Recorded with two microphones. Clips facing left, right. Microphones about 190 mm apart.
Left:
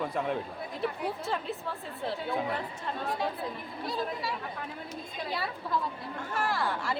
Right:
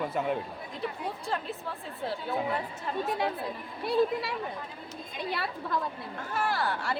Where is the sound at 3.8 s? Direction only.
65° right (ahead or behind).